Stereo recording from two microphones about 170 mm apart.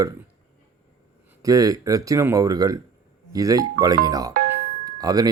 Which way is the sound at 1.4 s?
20° right (ahead or behind).